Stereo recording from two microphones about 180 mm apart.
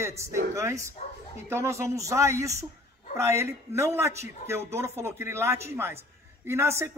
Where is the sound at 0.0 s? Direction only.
15° right (ahead or behind).